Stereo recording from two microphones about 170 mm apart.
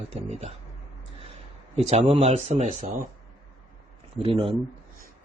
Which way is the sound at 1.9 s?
35° right (ahead or behind).